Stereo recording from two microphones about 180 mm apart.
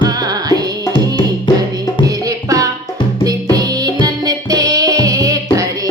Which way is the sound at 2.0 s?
20° right (ahead or behind).